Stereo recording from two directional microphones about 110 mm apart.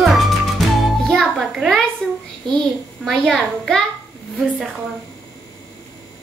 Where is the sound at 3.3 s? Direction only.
5° left (ahead or behind).